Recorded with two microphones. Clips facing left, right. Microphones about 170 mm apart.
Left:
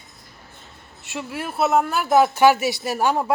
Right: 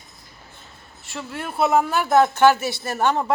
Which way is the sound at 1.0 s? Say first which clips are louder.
Left 2 dB; 10° left (ahead or behind).